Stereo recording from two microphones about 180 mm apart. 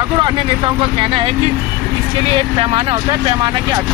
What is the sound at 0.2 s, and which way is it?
Speech, 25° right (ahead or behind).